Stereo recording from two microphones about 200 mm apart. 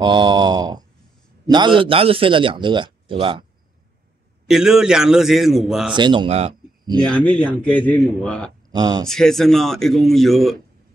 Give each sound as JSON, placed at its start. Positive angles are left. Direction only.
{"t": 0.0, "sound": "a sound", "side_deg": -25}
{"t": 1.5, "sound": "a man's voice", "side_deg": -25}
{"t": 4.5, "sound": "speech", "side_deg": -5}
{"t": 5.9, "sound": "speech", "side_deg": -25}
{"t": 7.1, "sound": "speech", "side_deg": 5}
{"t": 8.7, "sound": "a man's voice", "side_deg": -20}
{"t": 9.0, "sound": "speech", "side_deg": 0}